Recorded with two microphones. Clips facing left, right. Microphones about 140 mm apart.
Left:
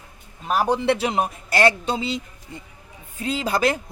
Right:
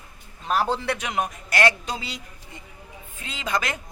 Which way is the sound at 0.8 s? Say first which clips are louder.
Left 6 dB; 30° left (ahead or behind).